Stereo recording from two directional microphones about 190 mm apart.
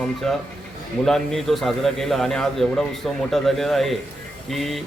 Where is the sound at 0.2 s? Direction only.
5° left (ahead or behind).